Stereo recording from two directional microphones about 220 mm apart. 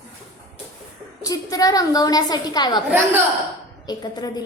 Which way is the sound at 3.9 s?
15° left (ahead or behind).